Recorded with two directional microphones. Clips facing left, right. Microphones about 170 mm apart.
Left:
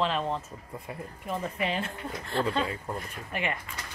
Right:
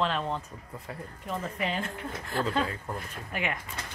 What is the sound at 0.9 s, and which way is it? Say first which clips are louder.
Speech: left 1 dB; 20° left (ahead or behind).